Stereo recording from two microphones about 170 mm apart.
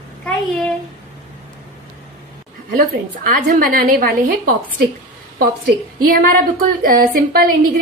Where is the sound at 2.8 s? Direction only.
60° right (ahead or behind).